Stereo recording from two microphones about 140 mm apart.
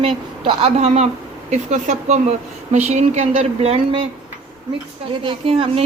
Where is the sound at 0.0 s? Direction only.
45° right (ahead or behind).